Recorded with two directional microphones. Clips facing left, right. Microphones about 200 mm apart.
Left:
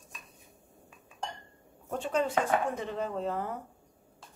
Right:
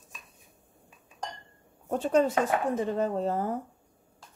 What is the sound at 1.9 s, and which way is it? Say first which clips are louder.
Speech: right 6 dB; 40° right (ahead or behind).